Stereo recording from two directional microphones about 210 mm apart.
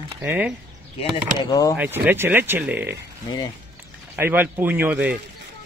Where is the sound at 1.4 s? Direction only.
15° left (ahead or behind).